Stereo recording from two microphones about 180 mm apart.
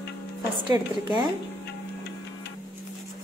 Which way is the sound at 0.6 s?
25° right (ahead or behind).